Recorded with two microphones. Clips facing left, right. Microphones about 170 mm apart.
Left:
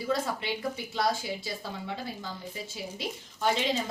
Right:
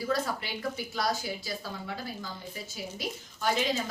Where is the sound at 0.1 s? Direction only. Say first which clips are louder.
Left 3 dB; 25° left (ahead or behind).